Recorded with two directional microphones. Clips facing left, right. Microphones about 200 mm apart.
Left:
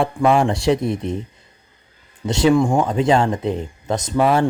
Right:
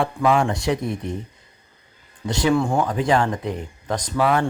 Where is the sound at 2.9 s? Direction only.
25° left (ahead or behind).